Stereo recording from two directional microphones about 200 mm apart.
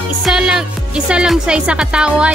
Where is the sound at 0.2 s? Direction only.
5° right (ahead or behind).